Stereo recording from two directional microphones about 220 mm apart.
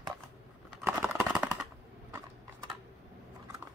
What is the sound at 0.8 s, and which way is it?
Computer keyboard, 5° right (ahead or behind).